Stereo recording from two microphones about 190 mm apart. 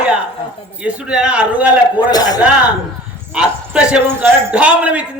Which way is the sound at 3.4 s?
5° right (ahead or behind).